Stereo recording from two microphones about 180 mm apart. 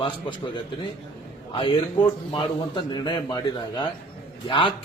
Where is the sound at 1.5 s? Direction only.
30° left (ahead or behind).